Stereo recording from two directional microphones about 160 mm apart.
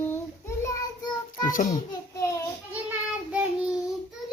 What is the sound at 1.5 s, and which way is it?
Speech, 55° left (ahead or behind).